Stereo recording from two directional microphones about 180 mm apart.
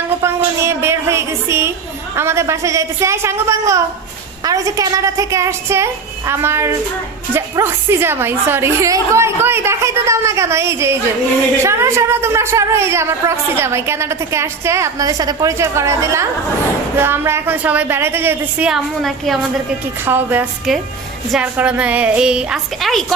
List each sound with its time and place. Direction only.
0.2 s a sound: 15° right (ahead or behind)
2.1 s a woman's voice: 15° right (ahead or behind)
18.7 s a woman's voice: centre (ahead or behind)
20.1 s a woman's voice: 10° right (ahead or behind)